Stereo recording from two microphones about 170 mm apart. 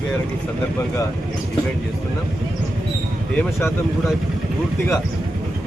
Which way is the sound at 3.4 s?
15° left (ahead or behind).